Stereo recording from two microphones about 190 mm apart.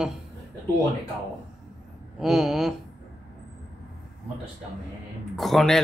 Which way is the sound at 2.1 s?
Centre (ahead or behind).